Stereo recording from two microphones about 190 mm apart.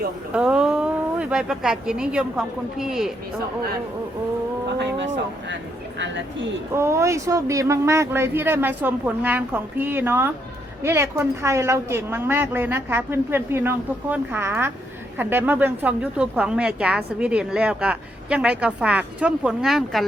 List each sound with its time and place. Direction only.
0.3 s a woman's voice: 5° right (ahead or behind)
4.8 s a sound: 70° right (ahead or behind)
6.7 s a woman's voice: 15° right (ahead or behind)